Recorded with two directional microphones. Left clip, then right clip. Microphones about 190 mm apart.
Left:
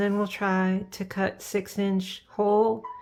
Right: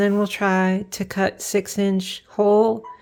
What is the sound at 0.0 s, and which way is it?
A woman's voice, 25° right (ahead or behind).